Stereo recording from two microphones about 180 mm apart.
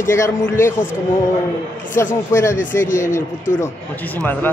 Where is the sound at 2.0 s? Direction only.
15° left (ahead or behind).